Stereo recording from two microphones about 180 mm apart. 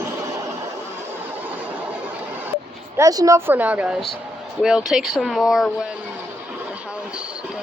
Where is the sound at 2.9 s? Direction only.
20° right (ahead or behind); by 5.7 s centre (ahead or behind).